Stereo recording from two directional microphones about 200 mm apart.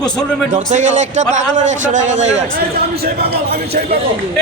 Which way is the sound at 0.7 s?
35° right (ahead or behind).